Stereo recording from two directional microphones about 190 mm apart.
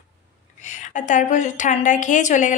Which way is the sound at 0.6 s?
40° left (ahead or behind).